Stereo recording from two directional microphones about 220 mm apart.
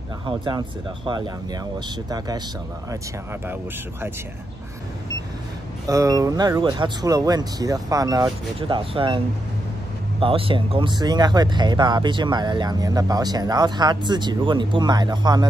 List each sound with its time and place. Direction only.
0.3 s speech: 20° right (ahead or behind)
5.9 s speech: 15° right (ahead or behind)
10.2 s speech: 25° right (ahead or behind)